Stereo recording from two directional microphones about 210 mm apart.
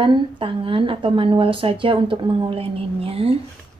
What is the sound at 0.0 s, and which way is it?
Speech, 25° right (ahead or behind).